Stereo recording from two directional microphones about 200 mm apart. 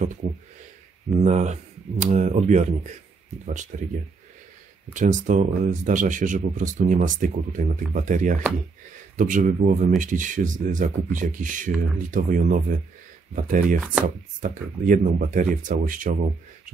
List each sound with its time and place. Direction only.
1.2 s speech: 35° right (ahead or behind)
4.9 s speech: 40° right (ahead or behind)
13.7 s chopping: 5° right (ahead or behind)
14.0 s speech: 40° right (ahead or behind)